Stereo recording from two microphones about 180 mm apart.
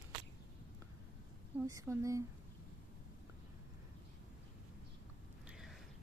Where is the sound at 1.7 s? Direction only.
20° right (ahead or behind).